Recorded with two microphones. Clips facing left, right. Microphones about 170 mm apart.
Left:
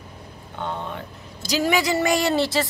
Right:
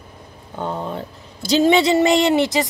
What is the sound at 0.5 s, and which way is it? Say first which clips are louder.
Speech: right 5 dB; 35° right (ahead or behind).